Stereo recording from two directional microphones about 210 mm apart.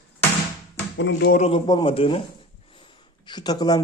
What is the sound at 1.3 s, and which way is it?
A man's voice, 30° left (ahead or behind).